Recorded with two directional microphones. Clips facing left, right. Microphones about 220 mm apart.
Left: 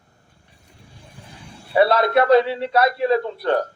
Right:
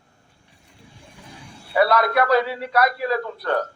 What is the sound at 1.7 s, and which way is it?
A man's voice, 25° left (ahead or behind).